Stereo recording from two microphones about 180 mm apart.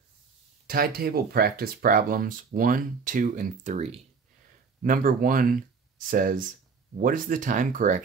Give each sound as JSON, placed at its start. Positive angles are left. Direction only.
{"t": 0.7, "sound": "speech", "side_deg": -55}
{"t": 4.8, "sound": "speech", "side_deg": -50}